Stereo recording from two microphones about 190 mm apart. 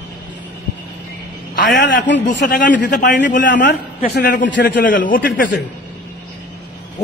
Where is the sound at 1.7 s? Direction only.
65° left (ahead or behind).